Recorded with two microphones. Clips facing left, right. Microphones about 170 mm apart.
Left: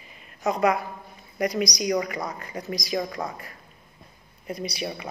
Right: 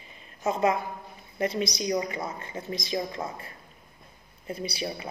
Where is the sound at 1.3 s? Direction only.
25° right (ahead or behind).